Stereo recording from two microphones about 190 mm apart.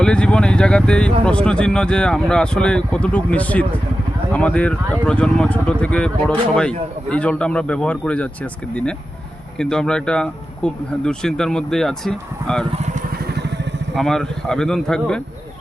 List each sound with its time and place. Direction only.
0.0 s vehicle: 5° left (ahead or behind)
1.2 s speech: 5° left (ahead or behind)
13.9 s speech: centre (ahead or behind)